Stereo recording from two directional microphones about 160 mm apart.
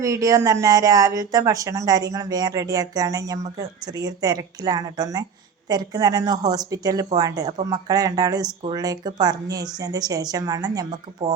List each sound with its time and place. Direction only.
0.0 s speech: 20° right (ahead or behind)